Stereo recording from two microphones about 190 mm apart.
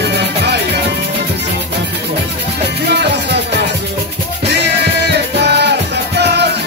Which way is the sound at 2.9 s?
60° right (ahead or behind).